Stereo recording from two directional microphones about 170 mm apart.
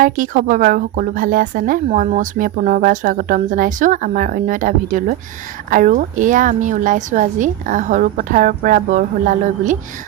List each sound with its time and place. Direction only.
0.0 s a woman's voice: 50° right (ahead or behind)